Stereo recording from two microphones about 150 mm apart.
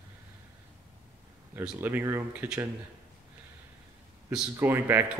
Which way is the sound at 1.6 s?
10° right (ahead or behind).